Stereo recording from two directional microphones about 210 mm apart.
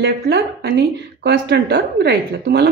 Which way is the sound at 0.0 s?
50° right (ahead or behind).